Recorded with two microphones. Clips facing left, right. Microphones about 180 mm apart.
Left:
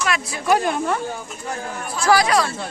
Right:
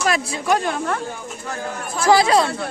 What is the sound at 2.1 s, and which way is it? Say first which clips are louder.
Speech: right 2 dB; 25° right (ahead or behind).